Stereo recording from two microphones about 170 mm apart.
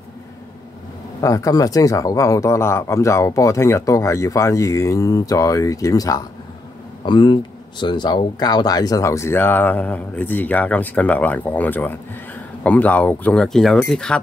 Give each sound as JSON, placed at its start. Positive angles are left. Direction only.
{"t": 1.2, "sound": "speech", "side_deg": 20}